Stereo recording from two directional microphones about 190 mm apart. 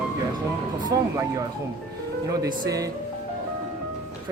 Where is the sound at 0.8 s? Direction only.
15° right (ahead or behind).